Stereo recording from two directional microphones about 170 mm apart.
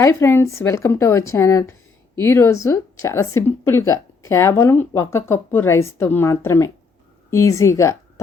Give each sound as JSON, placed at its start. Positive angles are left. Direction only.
{"t": 0.0, "sound": "a woman's voice", "side_deg": 15}